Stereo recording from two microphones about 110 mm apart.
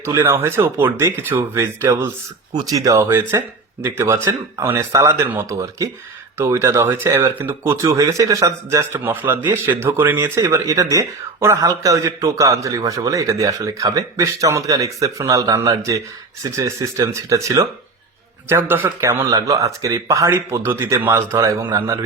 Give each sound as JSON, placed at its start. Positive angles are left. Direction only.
{"t": 0.0, "sound": "speech", "side_deg": -25}
{"t": 2.5, "sound": "speech", "side_deg": -35}